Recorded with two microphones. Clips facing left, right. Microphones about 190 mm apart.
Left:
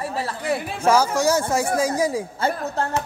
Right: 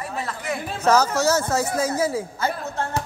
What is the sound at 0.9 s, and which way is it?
Speech, 10° left (ahead or behind).